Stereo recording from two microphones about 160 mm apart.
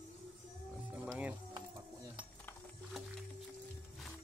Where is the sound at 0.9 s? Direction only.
10° right (ahead or behind).